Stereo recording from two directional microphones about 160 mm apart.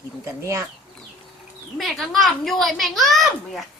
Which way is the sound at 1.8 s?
Centre (ahead or behind).